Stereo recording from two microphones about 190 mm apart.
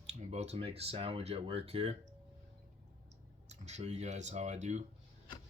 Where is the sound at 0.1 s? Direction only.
35° right (ahead or behind).